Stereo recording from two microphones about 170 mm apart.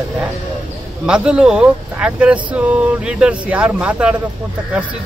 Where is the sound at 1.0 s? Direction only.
5° right (ahead or behind).